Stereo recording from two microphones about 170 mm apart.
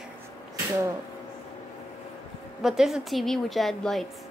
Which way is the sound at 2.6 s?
Centre (ahead or behind).